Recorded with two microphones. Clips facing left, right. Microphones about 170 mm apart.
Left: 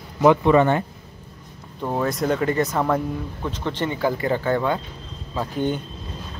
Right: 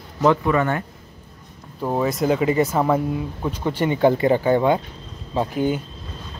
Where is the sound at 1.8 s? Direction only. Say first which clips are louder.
Right 2 dB; 5° right (ahead or behind).